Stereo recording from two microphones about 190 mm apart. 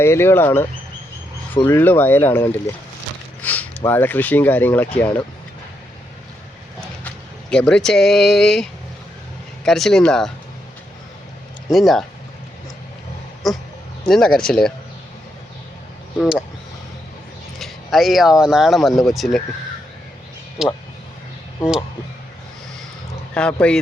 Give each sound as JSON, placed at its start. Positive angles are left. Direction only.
{"t": 0.0, "sound": "speech", "side_deg": 15}
{"t": 7.5, "sound": "speech", "side_deg": 5}
{"t": 11.7, "sound": "speech", "side_deg": 0}
{"t": 13.4, "sound": "speech", "side_deg": 0}
{"t": 16.1, "sound": "speech", "side_deg": 0}
{"t": 17.6, "sound": "speech", "side_deg": 0}
{"t": 20.6, "sound": "speech", "side_deg": -5}
{"t": 23.3, "sound": "speech", "side_deg": 5}